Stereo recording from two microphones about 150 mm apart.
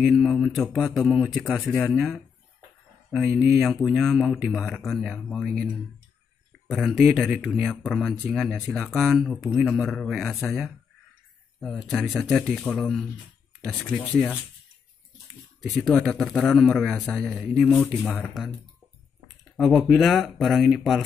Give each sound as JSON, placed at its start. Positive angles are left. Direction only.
{"t": 0.0, "sound": "speech", "side_deg": 0}
{"t": 3.1, "sound": "speech", "side_deg": -5}
{"t": 6.7, "sound": "speech", "side_deg": 0}
{"t": 15.7, "sound": "speech", "side_deg": 0}
{"t": 19.5, "sound": "speech", "side_deg": 0}